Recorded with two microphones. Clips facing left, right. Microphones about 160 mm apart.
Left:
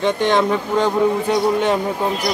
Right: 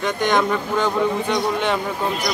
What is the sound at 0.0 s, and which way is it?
Speech, 30° left (ahead or behind).